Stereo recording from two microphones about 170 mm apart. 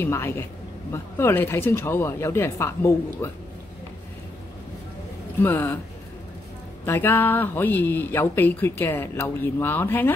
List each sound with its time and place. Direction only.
0.0 s speech: 15° left (ahead or behind)
5.4 s speech: 10° left (ahead or behind)
6.9 s speech: 10° left (ahead or behind)